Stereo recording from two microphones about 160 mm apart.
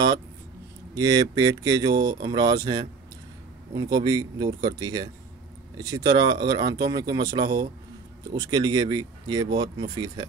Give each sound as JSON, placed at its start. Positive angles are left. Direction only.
{"t": 0.9, "sound": "speech", "side_deg": -25}